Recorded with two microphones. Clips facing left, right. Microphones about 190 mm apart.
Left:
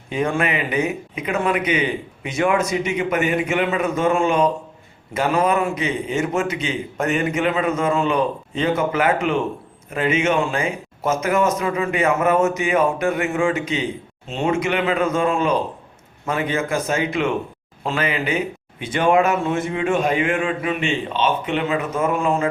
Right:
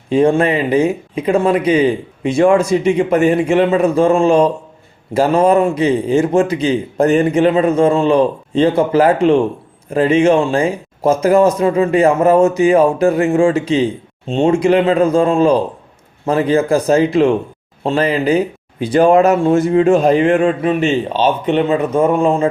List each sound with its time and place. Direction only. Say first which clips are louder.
0.1 s speech: right 9 dB; 30° right (ahead or behind)